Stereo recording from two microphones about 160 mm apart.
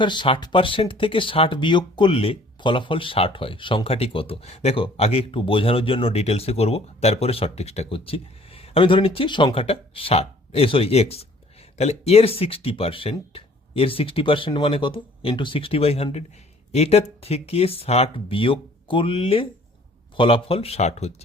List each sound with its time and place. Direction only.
0.0 s speech: 30° left (ahead or behind)